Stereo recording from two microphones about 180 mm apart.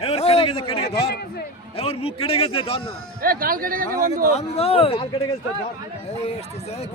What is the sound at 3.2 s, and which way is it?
Speech, 55° right (ahead or behind).